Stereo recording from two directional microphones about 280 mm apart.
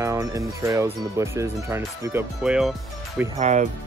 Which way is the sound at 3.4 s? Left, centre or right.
Right.